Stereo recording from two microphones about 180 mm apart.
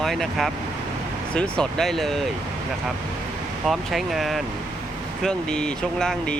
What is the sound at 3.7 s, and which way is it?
Speech, centre (ahead or behind).